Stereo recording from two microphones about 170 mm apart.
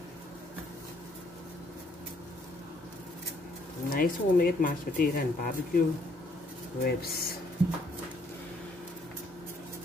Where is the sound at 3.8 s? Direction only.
55° left (ahead or behind).